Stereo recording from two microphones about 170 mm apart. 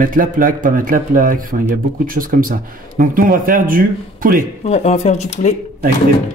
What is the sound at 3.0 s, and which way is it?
Speech, 55° right (ahead or behind).